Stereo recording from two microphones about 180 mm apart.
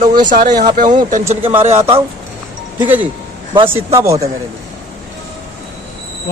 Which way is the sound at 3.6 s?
15° right (ahead or behind).